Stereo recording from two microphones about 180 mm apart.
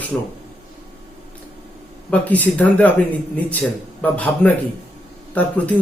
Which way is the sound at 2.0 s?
10° left (ahead or behind).